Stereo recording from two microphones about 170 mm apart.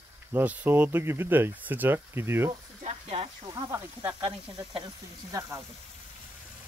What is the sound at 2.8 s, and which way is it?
Speech, 40° right (ahead or behind).